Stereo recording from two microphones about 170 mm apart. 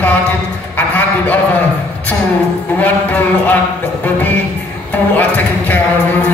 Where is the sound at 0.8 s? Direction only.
10° left (ahead or behind).